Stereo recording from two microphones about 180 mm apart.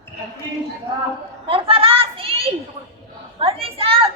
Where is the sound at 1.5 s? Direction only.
30° right (ahead or behind).